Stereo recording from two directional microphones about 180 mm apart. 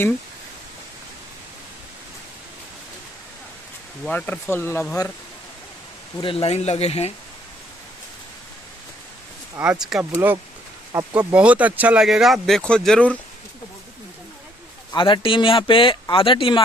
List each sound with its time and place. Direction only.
4.0 s speech: 10° left (ahead or behind)
6.2 s speech: 30° left (ahead or behind)
9.6 s speech: 5° right (ahead or behind)
10.9 s speech: 15° right (ahead or behind); by 13.2 s 5° left (ahead or behind)
14.9 s speech: 30° left (ahead or behind)